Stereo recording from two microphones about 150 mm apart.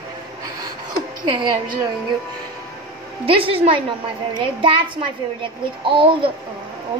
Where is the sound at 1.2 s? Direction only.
30° right (ahead or behind).